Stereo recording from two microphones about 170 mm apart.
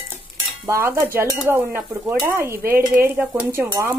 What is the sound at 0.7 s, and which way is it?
Speech, 15° right (ahead or behind).